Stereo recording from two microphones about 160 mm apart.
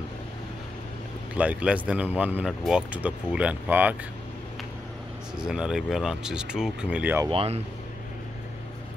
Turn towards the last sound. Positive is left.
turn(degrees=-40)  # may be behind; listen again after turning